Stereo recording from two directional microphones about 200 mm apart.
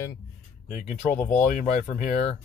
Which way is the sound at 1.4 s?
40° left (ahead or behind).